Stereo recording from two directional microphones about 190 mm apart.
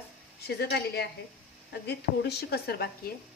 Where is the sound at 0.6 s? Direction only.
60° left (ahead or behind).